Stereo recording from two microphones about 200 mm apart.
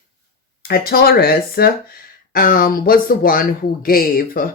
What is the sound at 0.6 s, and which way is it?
Speech, 50° left (ahead or behind).